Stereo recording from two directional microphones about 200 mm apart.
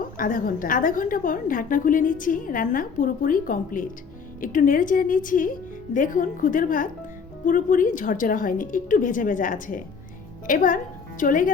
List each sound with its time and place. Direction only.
0.0 s a woman's voice: 45° left (ahead or behind)